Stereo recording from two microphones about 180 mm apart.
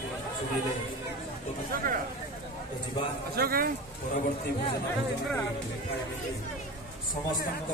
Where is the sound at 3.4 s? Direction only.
55° right (ahead or behind).